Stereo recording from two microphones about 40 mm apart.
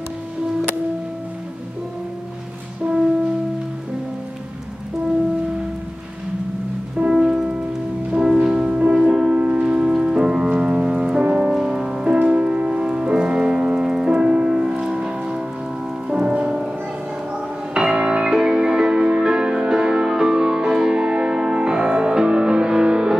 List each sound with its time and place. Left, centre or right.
7.1 s music: centre
10.5 s music: right
17.7 s music: centre